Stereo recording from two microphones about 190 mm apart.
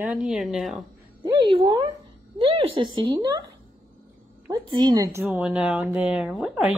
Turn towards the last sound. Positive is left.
turn(degrees=-5)  # may be behind; listen again after turning